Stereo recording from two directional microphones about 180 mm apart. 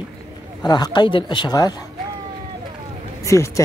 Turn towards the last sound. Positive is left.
turn(degrees=15)  # may be behind; listen again after turning